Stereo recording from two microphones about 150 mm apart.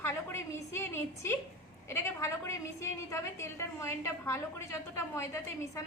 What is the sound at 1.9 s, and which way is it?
A woman's voice, 20° left (ahead or behind).